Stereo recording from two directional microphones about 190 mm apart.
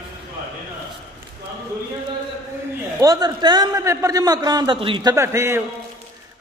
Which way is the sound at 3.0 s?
20° right (ahead or behind).